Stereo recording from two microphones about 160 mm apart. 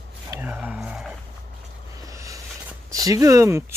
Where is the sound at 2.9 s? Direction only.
20° right (ahead or behind).